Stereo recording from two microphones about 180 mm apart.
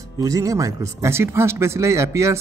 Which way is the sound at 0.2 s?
20° right (ahead or behind).